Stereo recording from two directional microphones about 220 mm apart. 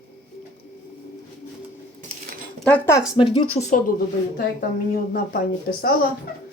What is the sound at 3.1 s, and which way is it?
Speech, 25° left (ahead or behind).